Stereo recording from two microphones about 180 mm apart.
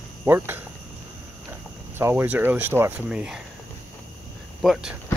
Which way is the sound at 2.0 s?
10° right (ahead or behind).